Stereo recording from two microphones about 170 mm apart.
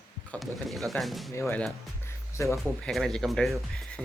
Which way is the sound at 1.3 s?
15° left (ahead or behind).